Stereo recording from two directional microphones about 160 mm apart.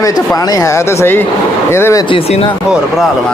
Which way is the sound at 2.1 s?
35° left (ahead or behind).